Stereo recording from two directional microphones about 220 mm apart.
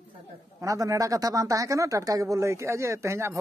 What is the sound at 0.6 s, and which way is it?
Speech, 15° right (ahead or behind).